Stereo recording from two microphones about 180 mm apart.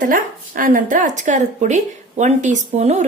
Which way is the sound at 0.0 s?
50° right (ahead or behind).